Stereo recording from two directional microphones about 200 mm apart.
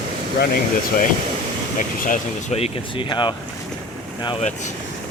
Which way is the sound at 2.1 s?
35° left (ahead or behind).